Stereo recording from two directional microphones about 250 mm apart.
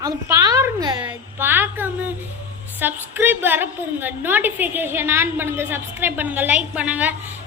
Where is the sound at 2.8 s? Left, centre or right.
Centre.